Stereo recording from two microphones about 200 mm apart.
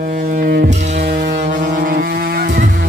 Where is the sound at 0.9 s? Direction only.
55° right (ahead or behind).